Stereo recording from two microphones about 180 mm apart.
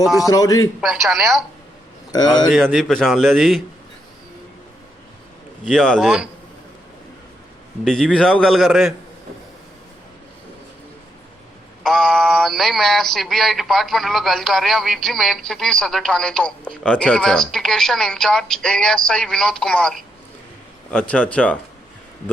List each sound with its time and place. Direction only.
0.3 s a man's voice: 20° left (ahead or behind)
0.8 s speech: centre (ahead or behind)
2.1 s a man's voice: 25° left (ahead or behind)
2.6 s speech: centre (ahead or behind)
5.6 s speech: 5° left (ahead or behind)
7.9 s speech: 5° left (ahead or behind)
11.8 s speech: centre (ahead or behind)